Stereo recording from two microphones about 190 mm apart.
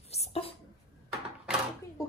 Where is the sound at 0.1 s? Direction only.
30° left (ahead or behind).